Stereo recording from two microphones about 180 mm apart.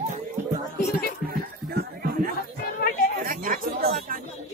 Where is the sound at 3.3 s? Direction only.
50° right (ahead or behind).